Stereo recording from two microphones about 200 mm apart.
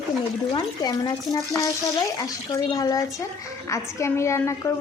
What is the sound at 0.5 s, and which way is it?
A woman's voice, 20° left (ahead or behind).